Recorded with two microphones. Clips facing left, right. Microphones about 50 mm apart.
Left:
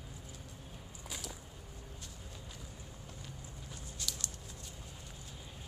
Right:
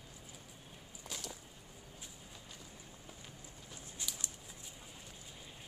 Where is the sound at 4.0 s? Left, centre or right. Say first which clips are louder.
Left 2 dB; centre.